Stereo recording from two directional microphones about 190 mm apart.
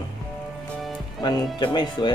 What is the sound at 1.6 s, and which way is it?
Speech, 25° left (ahead or behind).